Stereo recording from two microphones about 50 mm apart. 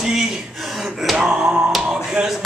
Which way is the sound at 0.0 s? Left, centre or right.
Centre.